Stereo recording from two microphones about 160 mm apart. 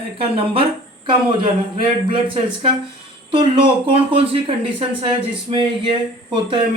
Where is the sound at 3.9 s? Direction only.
35° right (ahead or behind).